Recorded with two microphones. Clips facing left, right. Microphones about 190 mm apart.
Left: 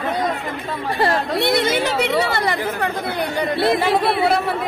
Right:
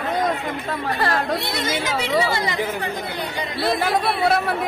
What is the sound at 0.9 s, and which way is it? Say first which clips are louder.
Speech: left 4 dB; 25° left (ahead or behind).